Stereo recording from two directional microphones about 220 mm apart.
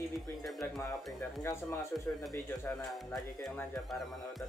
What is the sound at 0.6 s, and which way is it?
Music, 10° left (ahead or behind).